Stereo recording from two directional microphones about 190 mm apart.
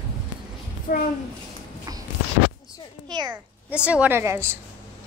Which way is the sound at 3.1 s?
20° right (ahead or behind).